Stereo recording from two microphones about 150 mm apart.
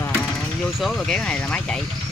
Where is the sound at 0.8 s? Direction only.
Centre (ahead or behind).